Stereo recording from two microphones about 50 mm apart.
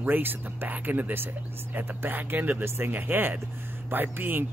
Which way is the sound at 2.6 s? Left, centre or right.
Right.